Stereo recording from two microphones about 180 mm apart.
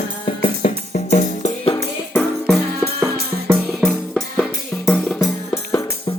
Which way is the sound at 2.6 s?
60° right (ahead or behind).